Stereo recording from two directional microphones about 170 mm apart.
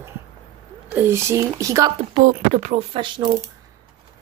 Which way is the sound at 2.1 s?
45° right (ahead or behind).